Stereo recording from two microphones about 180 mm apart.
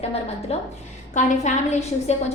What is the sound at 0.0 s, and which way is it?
A woman's voice, 35° left (ahead or behind).